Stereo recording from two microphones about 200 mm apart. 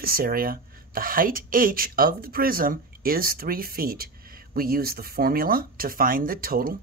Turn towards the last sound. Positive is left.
turn(degrees=-45)  # may be behind; listen again after turning